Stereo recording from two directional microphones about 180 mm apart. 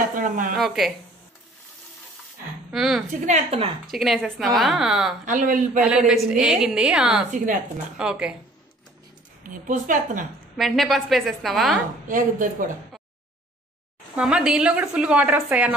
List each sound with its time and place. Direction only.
0.1 s a woman's voice: 50° right (ahead or behind)
0.6 s a woman's voice: centre (ahead or behind)
2.7 s a woman's voice: centre (ahead or behind)
3.1 s a woman's voice: 40° right (ahead or behind)
3.8 s a woman's voice: centre (ahead or behind)
5.2 s a woman's voice: 45° right (ahead or behind)
5.8 s a woman's voice: 5° right (ahead or behind)
7.2 s a woman's voice: 45° right (ahead or behind)
8.0 s a woman's voice: 5° right (ahead or behind)
9.4 s a woman's voice: 50° right (ahead or behind)
10.6 s a woman's voice: centre (ahead or behind)
12.1 s a woman's voice: 45° right (ahead or behind)
14.1 s a woman's voice: 5° right (ahead or behind)